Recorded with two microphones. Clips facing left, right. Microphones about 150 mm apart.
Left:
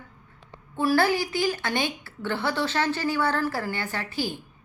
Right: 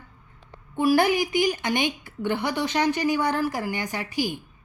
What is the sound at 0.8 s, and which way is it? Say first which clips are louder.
A woman's voice: right 2 dB; 15° right (ahead or behind).